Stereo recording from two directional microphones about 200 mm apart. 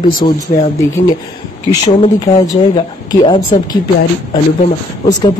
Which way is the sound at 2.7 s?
25° left (ahead or behind).